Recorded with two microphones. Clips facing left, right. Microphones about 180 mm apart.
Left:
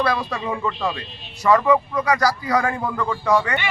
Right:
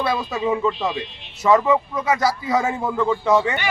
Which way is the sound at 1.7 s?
Centre (ahead or behind).